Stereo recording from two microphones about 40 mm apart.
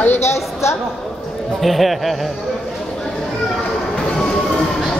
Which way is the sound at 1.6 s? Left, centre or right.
Centre.